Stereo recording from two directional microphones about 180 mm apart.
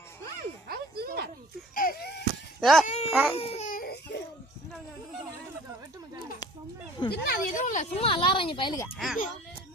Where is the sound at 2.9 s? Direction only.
35° left (ahead or behind).